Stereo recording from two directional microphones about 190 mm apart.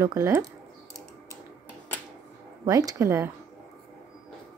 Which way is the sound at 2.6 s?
20° right (ahead or behind).